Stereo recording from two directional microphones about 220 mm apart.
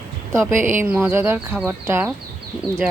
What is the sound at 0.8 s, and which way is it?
Speech, 10° right (ahead or behind).